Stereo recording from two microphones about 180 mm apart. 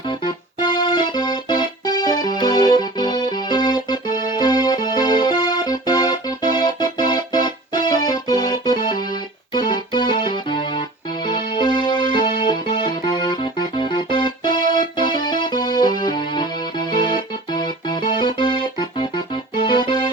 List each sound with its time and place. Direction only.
0.1 s keyboard: 25° left (ahead or behind)
9.5 s music: 25° left (ahead or behind)